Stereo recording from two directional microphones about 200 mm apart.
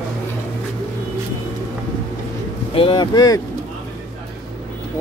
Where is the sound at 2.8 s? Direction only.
25° left (ahead or behind).